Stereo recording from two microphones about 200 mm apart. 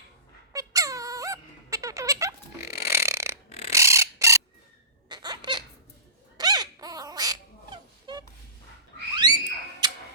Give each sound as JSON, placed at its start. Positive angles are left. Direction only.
{"t": 0.5, "sound": "squeak", "side_deg": -15}
{"t": 3.7, "sound": "chicken", "side_deg": -15}
{"t": 5.0, "sound": "baby laughter", "side_deg": -20}
{"t": 6.3, "sound": "dog", "side_deg": -20}
{"t": 9.1, "sound": "a sound", "side_deg": -20}
{"t": 9.8, "sound": "tick-tock", "side_deg": -20}